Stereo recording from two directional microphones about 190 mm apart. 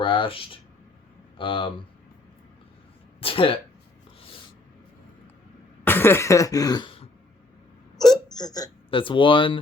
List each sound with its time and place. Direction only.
0.0 s speech: 25° left (ahead or behind)
3.2 s speech: 30° left (ahead or behind)
5.8 s cough: 10° left (ahead or behind); by 7.1 s 25° left (ahead or behind)
8.0 s speech: 20° left (ahead or behind)